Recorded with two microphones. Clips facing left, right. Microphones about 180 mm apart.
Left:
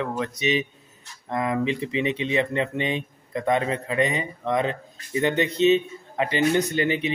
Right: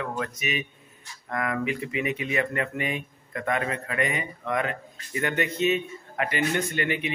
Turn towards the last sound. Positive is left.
turn(degrees=30)  # may be behind; listen again after turning